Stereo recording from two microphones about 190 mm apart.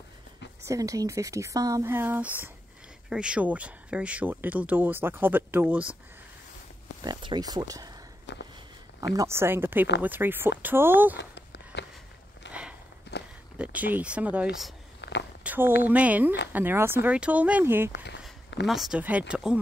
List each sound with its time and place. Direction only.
0.7 s speech: 20° right (ahead or behind)
7.0 s speech: 25° right (ahead or behind)
8.3 s walk: 65° left (ahead or behind)
9.1 s speech: 15° right (ahead or behind)
11.1 s a sound: 65° left (ahead or behind)
12.4 s walk: 65° left (ahead or behind)
13.1 s a sound: 65° left (ahead or behind)
13.6 s speech: 10° right (ahead or behind)
15.0 s a sound: 65° left (ahead or behind)
15.4 s speech: 10° right (ahead or behind)
17.9 s speech: 70° left (ahead or behind)
18.7 s speech: centre (ahead or behind)